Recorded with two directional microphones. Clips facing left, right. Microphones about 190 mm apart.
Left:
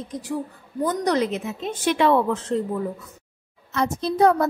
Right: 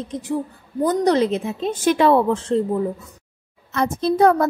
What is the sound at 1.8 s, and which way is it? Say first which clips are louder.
A woman's voice: right 3 dB; 40° right (ahead or behind).